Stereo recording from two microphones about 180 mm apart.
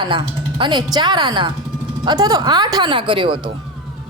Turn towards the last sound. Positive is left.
turn(degrees=-30)  # may be behind; listen again after turning